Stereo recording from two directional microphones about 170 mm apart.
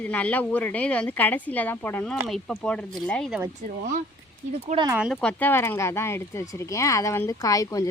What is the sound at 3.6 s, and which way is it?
Speech, 50° right (ahead or behind).